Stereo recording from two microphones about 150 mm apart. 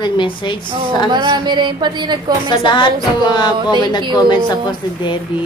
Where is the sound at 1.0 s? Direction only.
30° right (ahead or behind).